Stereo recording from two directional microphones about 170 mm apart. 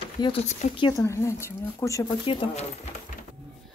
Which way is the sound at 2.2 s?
35° left (ahead or behind).